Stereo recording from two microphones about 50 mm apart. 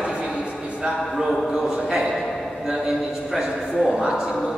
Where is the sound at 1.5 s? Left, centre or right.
Centre.